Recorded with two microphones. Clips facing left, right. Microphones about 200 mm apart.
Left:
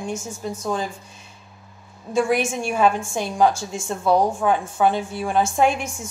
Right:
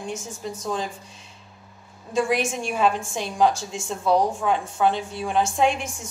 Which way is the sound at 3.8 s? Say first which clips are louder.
Left 2 dB; 50° left (ahead or behind).